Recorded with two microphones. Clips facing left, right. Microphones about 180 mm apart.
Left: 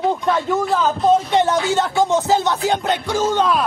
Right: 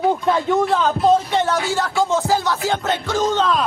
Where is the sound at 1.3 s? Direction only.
20° left (ahead or behind).